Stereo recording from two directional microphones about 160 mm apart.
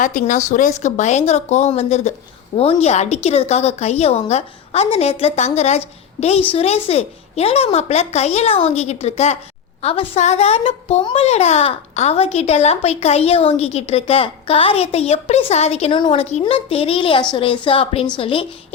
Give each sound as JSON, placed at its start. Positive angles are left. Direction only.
{"t": 0.0, "sound": "a child's voice", "side_deg": 55}